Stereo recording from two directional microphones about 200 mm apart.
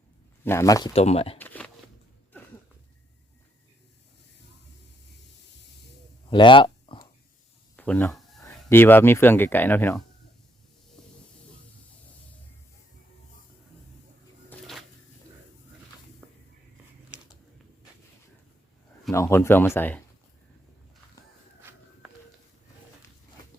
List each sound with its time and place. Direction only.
0.4 s speech: 15° left (ahead or behind)
0.9 s speech: 30° left (ahead or behind)
1.4 s shuffling cards: 10° left (ahead or behind)
6.3 s a sound: 25° left (ahead or behind)
7.8 s a sound: 10° left (ahead or behind)
8.7 s speech: 10° left (ahead or behind)
14.5 s cupboard open or close: centre (ahead or behind)
19.1 s speech: 15° left (ahead or behind)